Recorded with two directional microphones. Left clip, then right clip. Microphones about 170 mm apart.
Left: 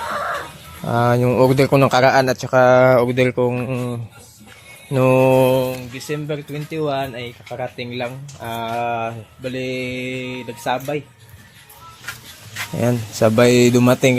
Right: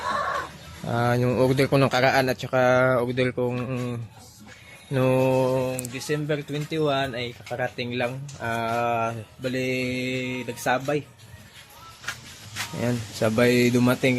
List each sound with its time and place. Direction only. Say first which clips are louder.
0.9 s speech: left 7 dB; 25° left (ahead or behind)
4.9 s speech: left 7 dB; 20° left (ahead or behind)
5.4 s speech: left 8 dB; 50° left (ahead or behind)
5.9 s speech: left 2 dB; centre (ahead or behind)
12.7 s speech: left 9 dB; 35° left (ahead or behind)